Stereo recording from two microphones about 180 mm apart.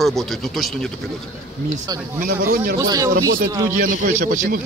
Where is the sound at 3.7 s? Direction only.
50° right (ahead or behind).